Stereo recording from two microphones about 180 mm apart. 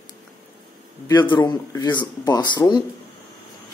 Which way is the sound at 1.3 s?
20° left (ahead or behind).